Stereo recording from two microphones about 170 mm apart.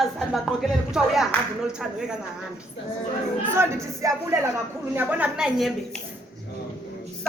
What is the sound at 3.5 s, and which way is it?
Speech, 15° right (ahead or behind).